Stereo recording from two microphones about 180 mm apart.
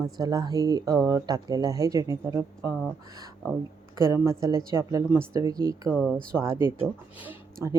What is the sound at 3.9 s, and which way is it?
A woman's voice, 15° right (ahead or behind).